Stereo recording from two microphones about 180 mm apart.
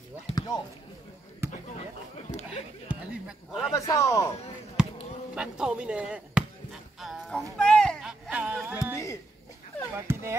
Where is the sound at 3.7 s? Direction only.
20° left (ahead or behind).